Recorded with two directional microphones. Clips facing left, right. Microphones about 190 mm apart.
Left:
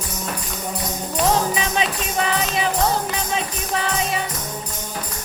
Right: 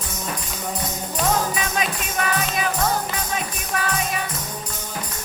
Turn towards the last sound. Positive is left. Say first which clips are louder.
# left 2 dB
turn(degrees=25)  # may be behind; listen again after turning